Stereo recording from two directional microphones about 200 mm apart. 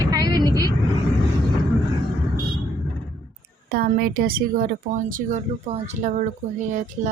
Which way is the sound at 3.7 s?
50° right (ahead or behind).